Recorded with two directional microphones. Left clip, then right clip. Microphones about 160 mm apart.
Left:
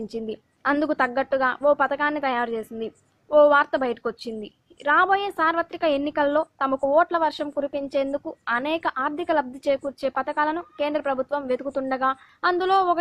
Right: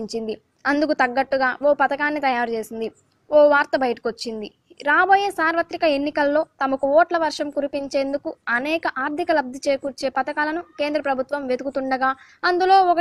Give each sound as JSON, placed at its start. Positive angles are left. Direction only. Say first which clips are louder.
{"t": 0.0, "sound": "a woman's voice", "louder": "right 4 dB", "side_deg": -15}